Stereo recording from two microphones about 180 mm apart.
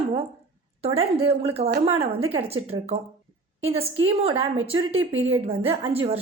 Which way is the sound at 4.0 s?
30° right (ahead or behind).